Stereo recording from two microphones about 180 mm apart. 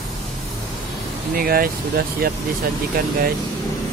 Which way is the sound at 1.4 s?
55° right (ahead or behind).